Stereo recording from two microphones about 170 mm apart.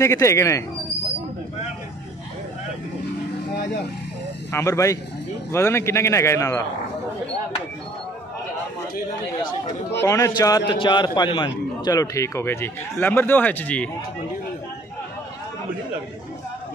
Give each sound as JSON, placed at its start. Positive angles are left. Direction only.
{"t": 0.0, "sound": "a man's voice", "side_deg": 15}
{"t": 4.5, "sound": "a man's voice", "side_deg": 15}
{"t": 10.0, "sound": "a man's voice", "side_deg": 20}